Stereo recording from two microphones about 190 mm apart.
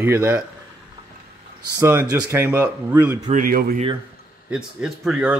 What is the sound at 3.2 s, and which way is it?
Speech, 45° right (ahead or behind).